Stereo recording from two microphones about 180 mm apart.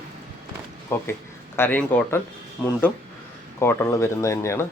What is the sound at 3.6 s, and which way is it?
A man's voice, 15° left (ahead or behind).